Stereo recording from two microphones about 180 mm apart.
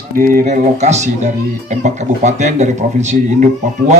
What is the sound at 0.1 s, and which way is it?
Speech, 50° right (ahead or behind).